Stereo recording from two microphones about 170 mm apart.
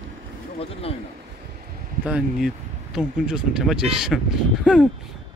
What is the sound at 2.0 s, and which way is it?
Speech, 5° right (ahead or behind).